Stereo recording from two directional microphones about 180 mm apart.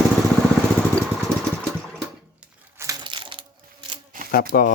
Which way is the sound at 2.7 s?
15° right (ahead or behind).